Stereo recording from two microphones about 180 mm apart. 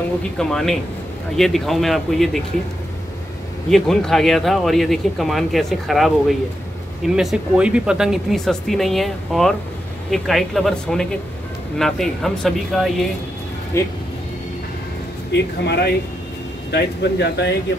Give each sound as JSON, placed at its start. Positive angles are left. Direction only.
{"t": 0.4, "sound": "speech", "side_deg": 5}
{"t": 3.7, "sound": "speech", "side_deg": 0}
{"t": 13.7, "sound": "speech", "side_deg": 15}
{"t": 15.3, "sound": "speech", "side_deg": 70}